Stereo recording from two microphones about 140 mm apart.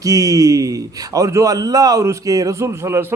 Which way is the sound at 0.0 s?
25° right (ahead or behind).